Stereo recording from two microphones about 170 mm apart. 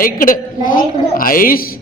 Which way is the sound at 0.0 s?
55° left (ahead or behind).